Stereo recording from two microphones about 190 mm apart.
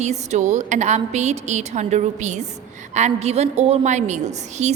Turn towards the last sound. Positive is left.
turn(degrees=-35)  # may be behind; listen again after turning